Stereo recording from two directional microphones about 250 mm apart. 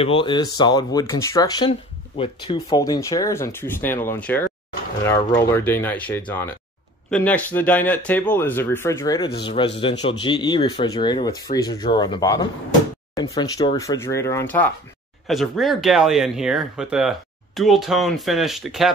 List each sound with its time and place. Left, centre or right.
0.0 s speech: left; by 18.9 s centre